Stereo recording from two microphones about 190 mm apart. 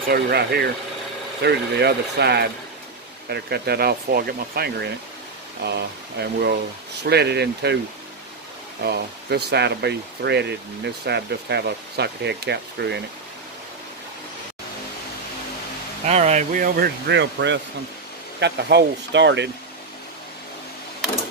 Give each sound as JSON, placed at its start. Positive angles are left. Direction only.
{"t": 0.1, "sound": "speech", "side_deg": -55}
{"t": 8.8, "sound": "speech", "side_deg": -60}
{"t": 16.1, "sound": "speech", "side_deg": -35}